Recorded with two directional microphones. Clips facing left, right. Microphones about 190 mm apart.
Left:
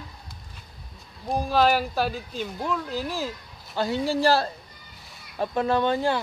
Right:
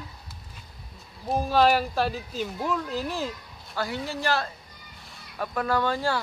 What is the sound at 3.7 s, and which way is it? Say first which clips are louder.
Speech: left 6 dB; 25° left (ahead or behind).